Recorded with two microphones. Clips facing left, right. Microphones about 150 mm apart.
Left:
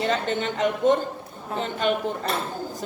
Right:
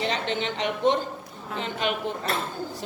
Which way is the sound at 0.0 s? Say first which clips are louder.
Left 3 dB; 45° left (ahead or behind).